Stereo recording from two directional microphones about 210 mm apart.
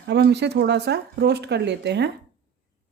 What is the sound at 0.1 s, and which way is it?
Speech, 55° right (ahead or behind).